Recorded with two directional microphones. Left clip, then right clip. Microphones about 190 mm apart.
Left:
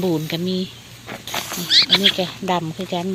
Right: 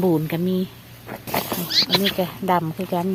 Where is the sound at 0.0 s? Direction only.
10° right (ahead or behind).